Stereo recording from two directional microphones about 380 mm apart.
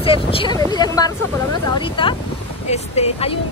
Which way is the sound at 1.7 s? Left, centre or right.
Centre.